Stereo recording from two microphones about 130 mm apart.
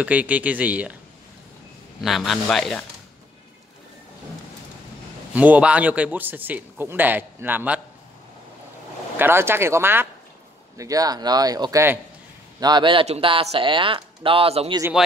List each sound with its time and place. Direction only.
0.0 s a man's voice: 10° right (ahead or behind)
2.0 s speech: centre (ahead or behind)
5.3 s a man's voice: 10° right (ahead or behind)
9.1 s a man's voice: 15° right (ahead or behind)
12.5 s a man's voice: 35° right (ahead or behind)
15.0 s speech: 5° right (ahead or behind)